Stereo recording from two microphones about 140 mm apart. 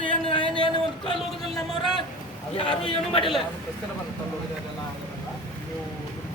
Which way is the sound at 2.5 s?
40° left (ahead or behind).